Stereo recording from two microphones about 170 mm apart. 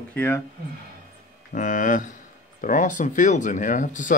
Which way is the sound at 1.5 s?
50° left (ahead or behind).